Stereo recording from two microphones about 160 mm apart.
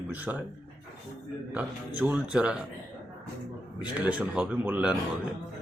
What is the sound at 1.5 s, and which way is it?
A man's voice, 10° right (ahead or behind).